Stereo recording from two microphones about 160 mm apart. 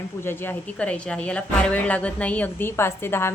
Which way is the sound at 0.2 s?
15° left (ahead or behind).